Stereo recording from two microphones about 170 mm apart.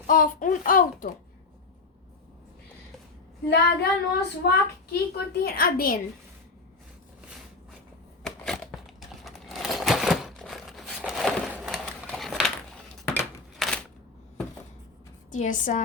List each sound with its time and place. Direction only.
0.1 s speech: 55° left (ahead or behind)
3.5 s a child's voice: 70° left (ahead or behind)
9.0 s crumpling: centre (ahead or behind)
13.6 s single-lens reflex camera: centre (ahead or behind)
15.3 s speech: 50° left (ahead or behind)